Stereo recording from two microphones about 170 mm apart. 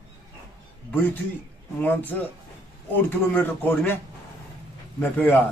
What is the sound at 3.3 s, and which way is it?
Speech, 10° left (ahead or behind).